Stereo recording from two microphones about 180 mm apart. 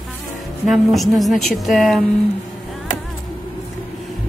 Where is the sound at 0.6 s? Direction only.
Centre (ahead or behind).